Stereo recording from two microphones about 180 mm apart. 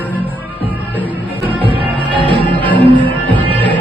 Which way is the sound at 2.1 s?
30° right (ahead or behind).